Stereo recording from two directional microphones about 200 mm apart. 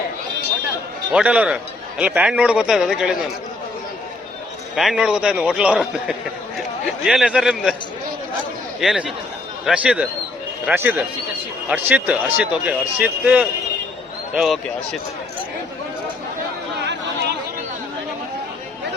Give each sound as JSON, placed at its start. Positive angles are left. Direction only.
{"t": 1.1, "sound": "a man's voice", "side_deg": -5}
{"t": 4.7, "sound": "a man's voice", "side_deg": -5}
{"t": 8.8, "sound": "a man's voice", "side_deg": 0}